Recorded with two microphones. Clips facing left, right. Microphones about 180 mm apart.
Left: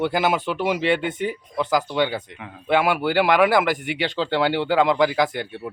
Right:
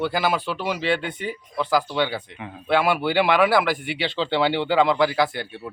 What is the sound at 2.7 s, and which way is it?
Speech, 15° left (ahead or behind).